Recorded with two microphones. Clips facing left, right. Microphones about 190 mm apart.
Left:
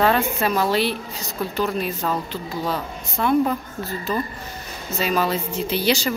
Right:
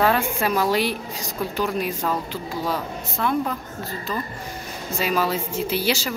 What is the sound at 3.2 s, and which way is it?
Speech, 5° left (ahead or behind).